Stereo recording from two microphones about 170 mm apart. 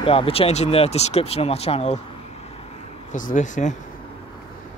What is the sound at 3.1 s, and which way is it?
Speech, 50° left (ahead or behind).